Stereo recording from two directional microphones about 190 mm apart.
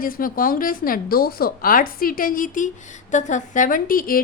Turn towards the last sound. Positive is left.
turn(degrees=50)  # may be behind; listen again after turning